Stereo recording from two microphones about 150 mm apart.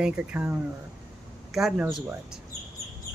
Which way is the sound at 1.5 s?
5° right (ahead or behind).